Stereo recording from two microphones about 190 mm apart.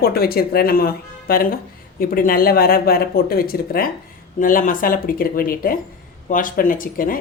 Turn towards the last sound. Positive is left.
turn(degrees=45)  # may be behind; listen again after turning